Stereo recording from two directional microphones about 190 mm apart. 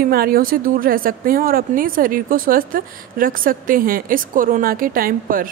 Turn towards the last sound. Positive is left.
turn(degrees=-50)  # may be behind; listen again after turning